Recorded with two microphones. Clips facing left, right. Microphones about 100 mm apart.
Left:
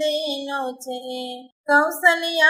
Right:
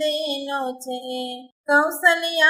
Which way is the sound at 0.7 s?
50° right (ahead or behind).